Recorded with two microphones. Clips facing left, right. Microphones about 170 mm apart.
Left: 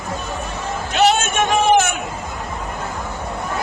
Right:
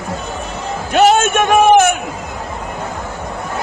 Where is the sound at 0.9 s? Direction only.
50° right (ahead or behind).